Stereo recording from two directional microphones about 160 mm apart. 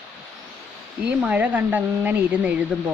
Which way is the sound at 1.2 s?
10° right (ahead or behind).